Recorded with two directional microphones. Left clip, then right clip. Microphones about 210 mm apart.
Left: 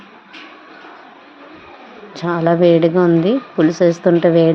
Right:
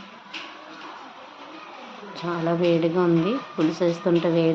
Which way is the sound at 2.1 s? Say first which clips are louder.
Left 10 dB; 35° left (ahead or behind).